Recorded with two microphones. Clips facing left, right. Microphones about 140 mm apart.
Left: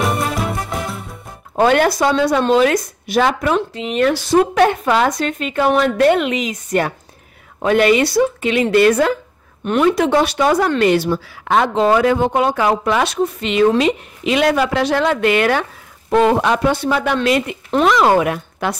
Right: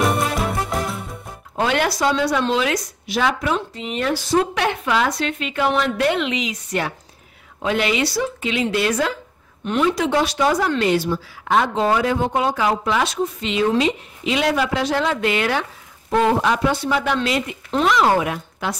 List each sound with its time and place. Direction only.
0.0 s music: centre (ahead or behind)
1.5 s speech: 50° left (ahead or behind)
4.6 s speech: 45° left (ahead or behind)